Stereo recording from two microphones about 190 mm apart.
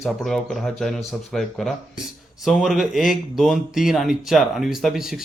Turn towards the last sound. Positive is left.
turn(degrees=0)  # may be behind; listen again after turning